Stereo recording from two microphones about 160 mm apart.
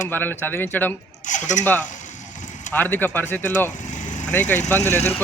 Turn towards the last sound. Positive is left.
turn(degrees=15)  # may be behind; listen again after turning